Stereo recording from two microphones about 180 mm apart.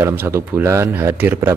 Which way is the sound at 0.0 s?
15° right (ahead or behind).